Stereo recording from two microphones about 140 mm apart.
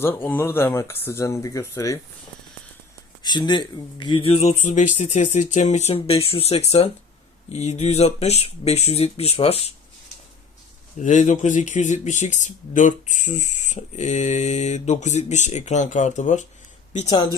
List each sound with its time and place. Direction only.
0.0 s speech: 15° left (ahead or behind)
3.2 s speech: 30° left (ahead or behind)
11.0 s speech: 60° left (ahead or behind)